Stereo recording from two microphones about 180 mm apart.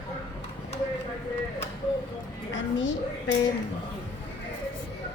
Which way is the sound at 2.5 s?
90° left.